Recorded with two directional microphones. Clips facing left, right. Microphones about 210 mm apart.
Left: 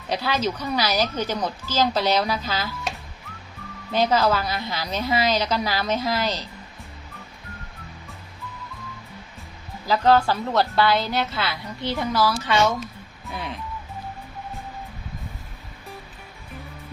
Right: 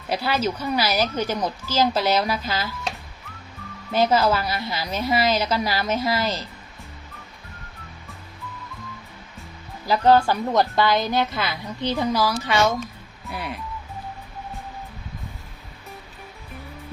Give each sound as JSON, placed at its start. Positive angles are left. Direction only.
{"t": 0.1, "sound": "a woman's voice", "side_deg": -10}
{"t": 3.9, "sound": "a woman's voice", "side_deg": -10}
{"t": 9.8, "sound": "a woman's voice", "side_deg": -10}